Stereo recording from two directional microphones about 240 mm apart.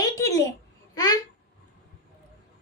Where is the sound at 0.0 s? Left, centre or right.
Centre.